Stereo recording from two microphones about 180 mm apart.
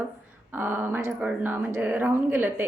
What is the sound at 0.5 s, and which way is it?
A woman's voice, 10° right (ahead or behind).